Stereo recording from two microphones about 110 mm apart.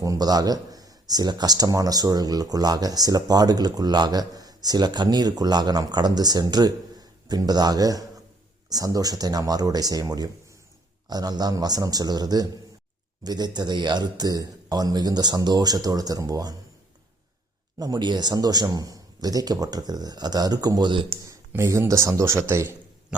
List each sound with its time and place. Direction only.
0.0 s speech: 35° right (ahead or behind)
17.7 s speech: 35° right (ahead or behind)
21.2 s speech: 25° right (ahead or behind)